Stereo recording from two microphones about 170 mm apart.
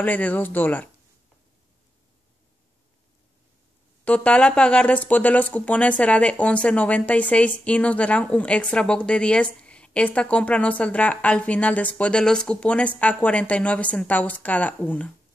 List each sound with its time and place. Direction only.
0.0 s speech: 10° left (ahead or behind)
4.0 s speech: 10° left (ahead or behind)